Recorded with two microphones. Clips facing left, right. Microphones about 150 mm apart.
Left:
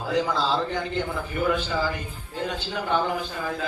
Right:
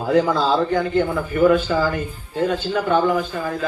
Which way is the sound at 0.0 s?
50° right (ahead or behind).